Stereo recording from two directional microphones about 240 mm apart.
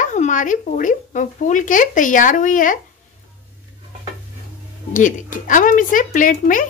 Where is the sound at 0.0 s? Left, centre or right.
Left.